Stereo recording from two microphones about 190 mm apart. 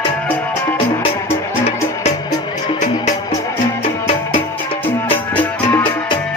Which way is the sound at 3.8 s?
30° left (ahead or behind).